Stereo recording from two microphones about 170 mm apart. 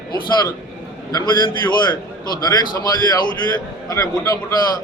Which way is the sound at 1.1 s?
25° left (ahead or behind).